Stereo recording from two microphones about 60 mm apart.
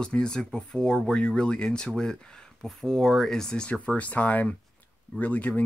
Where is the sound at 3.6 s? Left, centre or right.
Left.